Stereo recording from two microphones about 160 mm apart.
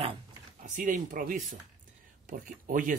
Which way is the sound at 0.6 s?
50° right (ahead or behind).